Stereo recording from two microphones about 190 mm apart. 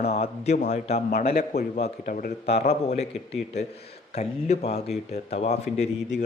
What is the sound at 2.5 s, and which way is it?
Speech, 35° left (ahead or behind).